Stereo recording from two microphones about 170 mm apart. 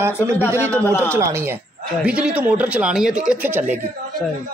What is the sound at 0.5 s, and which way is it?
Speech, 15° right (ahead or behind).